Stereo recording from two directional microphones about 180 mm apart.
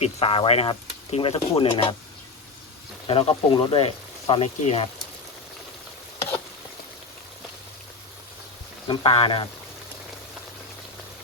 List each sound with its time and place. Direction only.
0.0 s speech: 30° left (ahead or behind)
3.1 s speech: 30° left (ahead or behind)
8.9 s speech: 30° left (ahead or behind)